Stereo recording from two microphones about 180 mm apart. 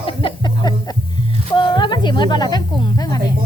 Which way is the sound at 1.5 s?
25° left (ahead or behind).